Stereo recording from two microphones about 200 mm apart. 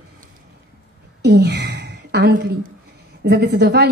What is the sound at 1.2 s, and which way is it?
A woman's voice, 55° right (ahead or behind).